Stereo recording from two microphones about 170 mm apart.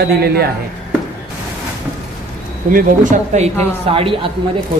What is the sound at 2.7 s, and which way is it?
Speech, 50° right (ahead or behind).